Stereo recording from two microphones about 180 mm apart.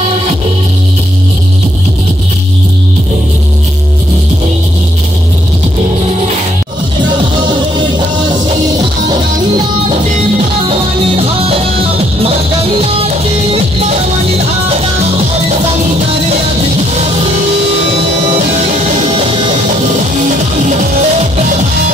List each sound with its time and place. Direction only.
7.4 s music: 25° right (ahead or behind)
10.7 s music: 30° right (ahead or behind)
12.8 s music: 30° right (ahead or behind)
20.2 s music: 45° right (ahead or behind)